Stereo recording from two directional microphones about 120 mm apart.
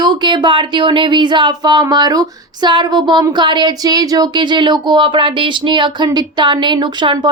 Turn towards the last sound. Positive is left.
turn(degrees=-40)  # may be behind; listen again after turning